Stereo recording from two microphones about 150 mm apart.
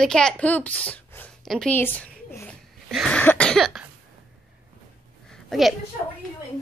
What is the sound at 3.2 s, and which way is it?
Cough, 10° left (ahead or behind).